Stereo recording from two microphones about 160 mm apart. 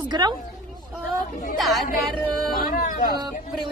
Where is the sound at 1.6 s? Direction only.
Centre (ahead or behind).